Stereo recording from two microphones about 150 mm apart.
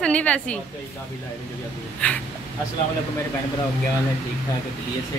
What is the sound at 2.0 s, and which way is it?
Speech, 10° left (ahead or behind).